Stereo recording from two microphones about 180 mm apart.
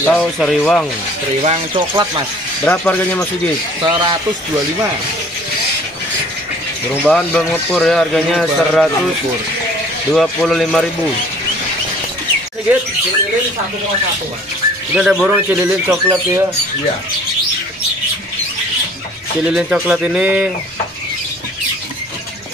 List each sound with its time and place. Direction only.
0.0 s a man's voice: 5° left (ahead or behind)
1.4 s speech: 30° right (ahead or behind)
2.6 s speech: 10° left (ahead or behind)
3.8 s speech: 25° right (ahead or behind)
7.1 s a man's voice: 5° left (ahead or behind)
10.1 s a man's voice: centre (ahead or behind)
15.0 s speech: 5° right (ahead or behind)
19.4 s a man's voice: 5° right (ahead or behind)